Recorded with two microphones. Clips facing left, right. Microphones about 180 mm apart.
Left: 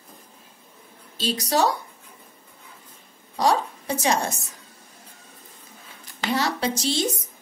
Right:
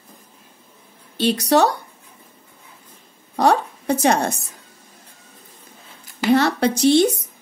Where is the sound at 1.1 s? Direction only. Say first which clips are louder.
Right 7 dB; 65° right (ahead or behind).